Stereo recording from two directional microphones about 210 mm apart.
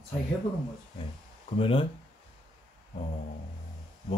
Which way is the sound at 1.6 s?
25° left (ahead or behind).